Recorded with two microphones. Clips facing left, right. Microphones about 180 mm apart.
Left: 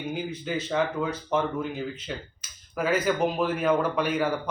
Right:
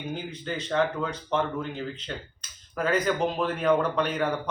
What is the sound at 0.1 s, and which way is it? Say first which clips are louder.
Speech: left 3 dB; 10° left (ahead or behind).